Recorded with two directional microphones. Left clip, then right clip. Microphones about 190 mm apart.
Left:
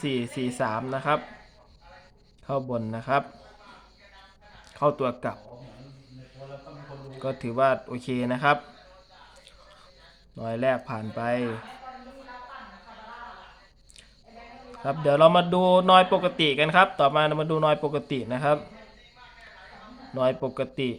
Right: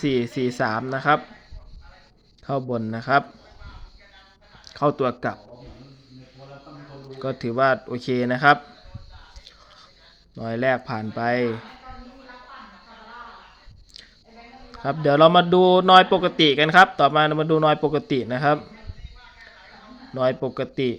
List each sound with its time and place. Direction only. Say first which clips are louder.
0.0 s a man's voice: right 6 dB; 20° right (ahead or behind)
2.5 s a man's voice: right 3 dB; 20° right (ahead or behind)
4.7 s a man's voice: right 3 dB; 20° right (ahead or behind)
7.2 s a man's voice: right 3 dB; 20° right (ahead or behind)
10.3 s a man's voice: right 3 dB; 20° right (ahead or behind)
14.7 s a man's voice: right 3 dB; 20° right (ahead or behind)
20.1 s a man's voice: right 2 dB; 20° right (ahead or behind)